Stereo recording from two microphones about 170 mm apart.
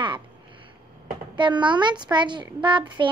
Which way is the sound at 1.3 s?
30° right (ahead or behind).